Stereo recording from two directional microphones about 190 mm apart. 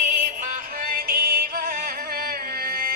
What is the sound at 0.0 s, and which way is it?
Music, 40° right (ahead or behind).